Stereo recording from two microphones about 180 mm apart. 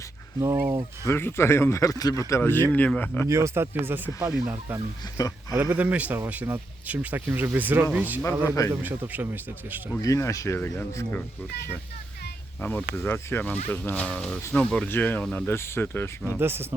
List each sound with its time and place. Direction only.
0.3 s speech: 15° right (ahead or behind)
1.0 s speech: 15° left (ahead or behind)
3.2 s speech: 15° right (ahead or behind)
5.1 s speech: 20° left (ahead or behind)
5.6 s speech: 10° right (ahead or behind)
10.0 s speech: 15° left (ahead or behind)
12.5 s speech: 10° left (ahead or behind)
16.4 s speech: 10° right (ahead or behind)